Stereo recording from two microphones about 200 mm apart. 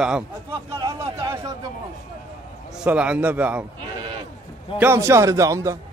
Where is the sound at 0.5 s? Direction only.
20° right (ahead or behind).